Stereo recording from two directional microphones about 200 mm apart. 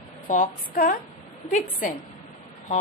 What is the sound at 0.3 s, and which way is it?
A woman's voice, 45° left (ahead or behind).